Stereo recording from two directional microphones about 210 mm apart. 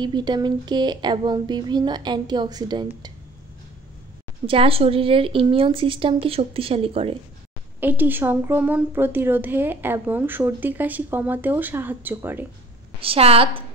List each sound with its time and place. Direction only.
0.0 s speech: 20° right (ahead or behind)
4.5 s speech: 25° right (ahead or behind)
7.8 s a woman's voice: 10° right (ahead or behind)
13.0 s speech: 25° right (ahead or behind)